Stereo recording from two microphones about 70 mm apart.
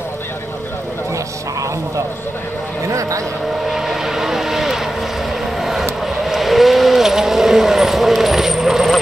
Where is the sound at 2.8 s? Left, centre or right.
Right.